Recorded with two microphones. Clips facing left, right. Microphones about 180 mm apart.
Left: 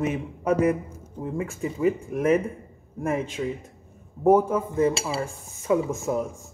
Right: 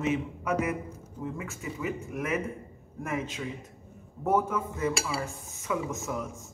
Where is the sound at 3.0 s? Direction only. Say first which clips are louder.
Left 7 dB; 30° left (ahead or behind).